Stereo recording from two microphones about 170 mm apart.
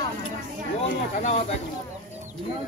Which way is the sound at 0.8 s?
40° left (ahead or behind).